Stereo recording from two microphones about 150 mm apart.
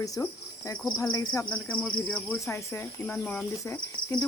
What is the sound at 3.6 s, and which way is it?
Speech, 20° left (ahead or behind).